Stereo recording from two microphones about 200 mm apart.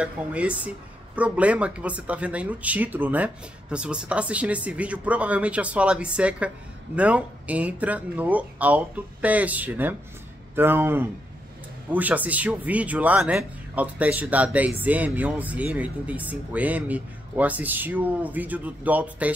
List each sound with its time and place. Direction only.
0.0 s speech: 5° right (ahead or behind)